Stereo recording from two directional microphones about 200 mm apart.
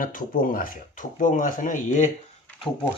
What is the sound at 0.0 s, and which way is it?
Speech, 45° left (ahead or behind).